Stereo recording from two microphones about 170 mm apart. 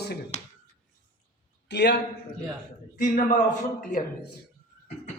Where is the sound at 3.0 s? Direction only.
45° left (ahead or behind).